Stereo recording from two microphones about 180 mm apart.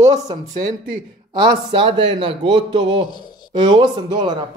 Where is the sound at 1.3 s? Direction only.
25° right (ahead or behind).